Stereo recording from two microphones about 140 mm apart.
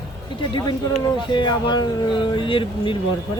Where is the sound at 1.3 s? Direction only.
35° left (ahead or behind).